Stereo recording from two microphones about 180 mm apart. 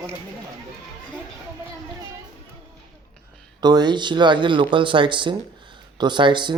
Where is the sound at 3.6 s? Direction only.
25° right (ahead or behind).